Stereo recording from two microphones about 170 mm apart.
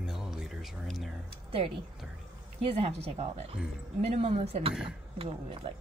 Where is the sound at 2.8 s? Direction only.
40° right (ahead or behind).